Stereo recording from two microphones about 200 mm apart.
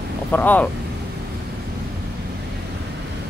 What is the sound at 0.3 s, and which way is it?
Speech, 10° left (ahead or behind).